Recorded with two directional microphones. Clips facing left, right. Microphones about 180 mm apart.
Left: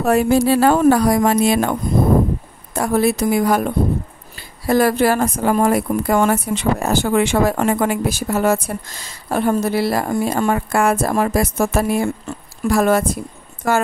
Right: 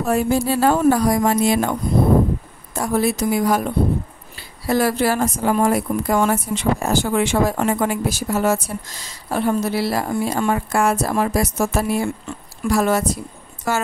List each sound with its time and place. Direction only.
0.0 s a woman's voice: 75° left (ahead or behind); by 13.8 s 50° left (ahead or behind)